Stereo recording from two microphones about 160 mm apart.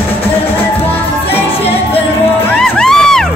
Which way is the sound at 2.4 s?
5° left (ahead or behind).